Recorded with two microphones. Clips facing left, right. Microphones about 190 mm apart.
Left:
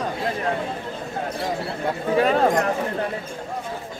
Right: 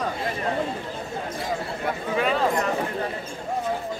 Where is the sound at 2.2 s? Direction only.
50° left (ahead or behind).